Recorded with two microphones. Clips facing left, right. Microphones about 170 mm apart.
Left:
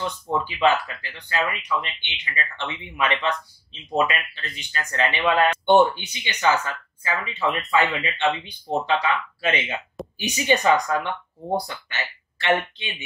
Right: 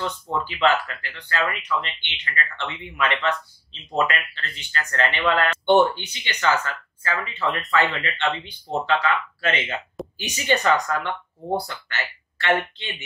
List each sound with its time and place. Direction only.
0.0 s speech: 15° left (ahead or behind)